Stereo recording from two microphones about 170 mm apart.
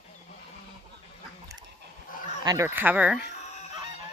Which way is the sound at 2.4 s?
20° right (ahead or behind).